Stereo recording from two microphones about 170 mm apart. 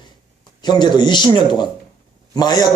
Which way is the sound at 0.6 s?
25° left (ahead or behind).